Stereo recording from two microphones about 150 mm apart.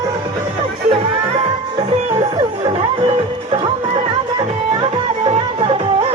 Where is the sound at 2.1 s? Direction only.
30° right (ahead or behind).